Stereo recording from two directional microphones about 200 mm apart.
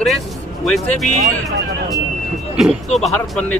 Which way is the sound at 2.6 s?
Centre (ahead or behind).